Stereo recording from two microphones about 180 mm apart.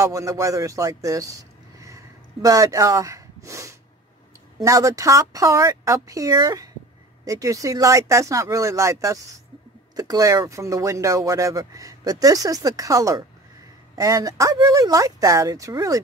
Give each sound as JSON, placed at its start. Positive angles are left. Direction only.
{"t": 0.0, "sound": "speech", "side_deg": -15}